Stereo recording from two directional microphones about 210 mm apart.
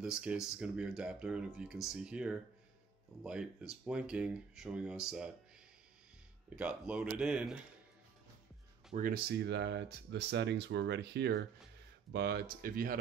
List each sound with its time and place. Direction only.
0.0 s speech: 5° right (ahead or behind)
6.5 s speech: 5° right (ahead or behind)
8.9 s speech: 45° right (ahead or behind)